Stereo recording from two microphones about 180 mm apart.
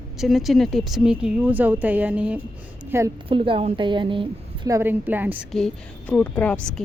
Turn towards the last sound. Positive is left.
turn(degrees=5)  # may be behind; listen again after turning